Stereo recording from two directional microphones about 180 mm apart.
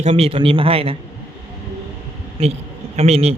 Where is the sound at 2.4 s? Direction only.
35° right (ahead or behind).